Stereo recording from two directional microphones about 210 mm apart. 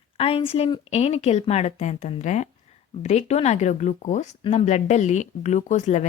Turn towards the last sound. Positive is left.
turn(degrees=35)  # may be behind; listen again after turning